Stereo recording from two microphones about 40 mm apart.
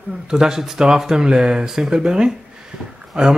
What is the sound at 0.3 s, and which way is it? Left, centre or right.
Speech, centre.